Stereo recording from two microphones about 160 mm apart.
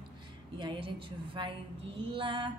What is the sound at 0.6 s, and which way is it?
Music, 30° right (ahead or behind).